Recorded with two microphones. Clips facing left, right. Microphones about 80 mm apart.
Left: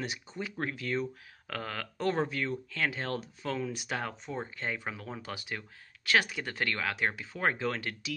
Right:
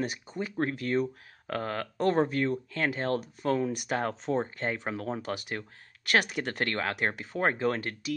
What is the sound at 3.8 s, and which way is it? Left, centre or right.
Speech, right.